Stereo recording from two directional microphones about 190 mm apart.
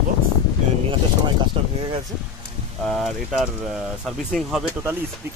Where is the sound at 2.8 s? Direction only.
Centre (ahead or behind).